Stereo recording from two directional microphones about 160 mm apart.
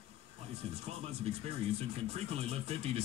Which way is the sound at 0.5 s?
40° right (ahead or behind).